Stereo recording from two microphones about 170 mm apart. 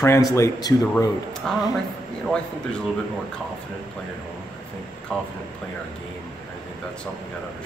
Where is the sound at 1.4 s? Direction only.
Centre (ahead or behind).